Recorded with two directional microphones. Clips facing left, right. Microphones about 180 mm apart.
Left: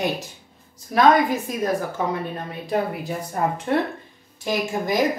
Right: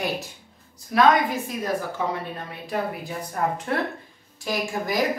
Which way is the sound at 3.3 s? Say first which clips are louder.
Left 3 dB; 25° left (ahead or behind).